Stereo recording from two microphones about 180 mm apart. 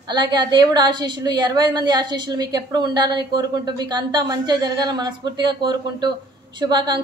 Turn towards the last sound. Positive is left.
turn(degrees=-25)  # may be behind; listen again after turning